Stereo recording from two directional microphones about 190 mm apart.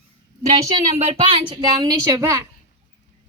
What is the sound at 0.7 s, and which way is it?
Speech, 30° right (ahead or behind).